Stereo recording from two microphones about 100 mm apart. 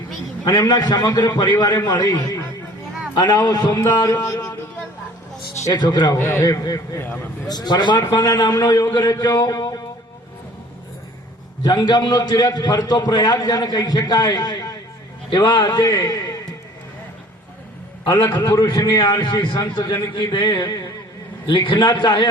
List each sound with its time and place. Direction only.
0.4 s a man's voice: 40° left (ahead or behind)
4.3 s music: 30° left (ahead or behind)
5.6 s a man's voice: 40° left (ahead or behind)
6.1 s a man's voice: 20° left (ahead or behind)
6.4 s a man's voice: 35° left (ahead or behind)
11.6 s a man's voice: 45° left (ahead or behind)
18.0 s a man's voice: 45° left (ahead or behind)
21.4 s a man's voice: 55° left (ahead or behind)